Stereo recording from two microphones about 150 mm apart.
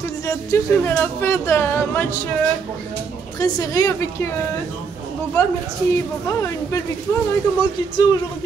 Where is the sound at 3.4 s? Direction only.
25° left (ahead or behind).